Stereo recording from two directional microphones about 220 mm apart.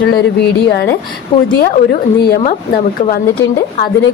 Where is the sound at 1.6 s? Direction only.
45° left (ahead or behind).